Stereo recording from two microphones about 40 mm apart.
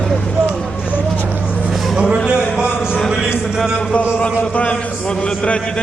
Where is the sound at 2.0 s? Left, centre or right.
Right.